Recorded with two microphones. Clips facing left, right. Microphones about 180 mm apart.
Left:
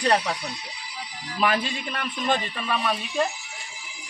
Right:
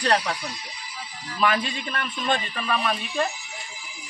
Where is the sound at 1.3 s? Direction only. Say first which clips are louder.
Even; 10° left (ahead or behind).